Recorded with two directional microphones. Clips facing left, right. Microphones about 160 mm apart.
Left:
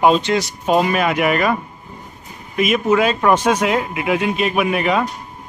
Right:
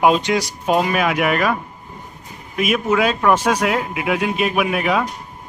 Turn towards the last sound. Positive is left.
turn(degrees=0)  # may be behind; listen again after turning